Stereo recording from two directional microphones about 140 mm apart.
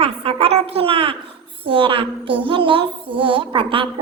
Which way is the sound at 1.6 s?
40° right (ahead or behind).